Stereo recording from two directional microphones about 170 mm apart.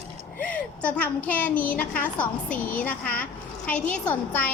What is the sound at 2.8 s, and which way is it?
A woman's voice, 10° left (ahead or behind).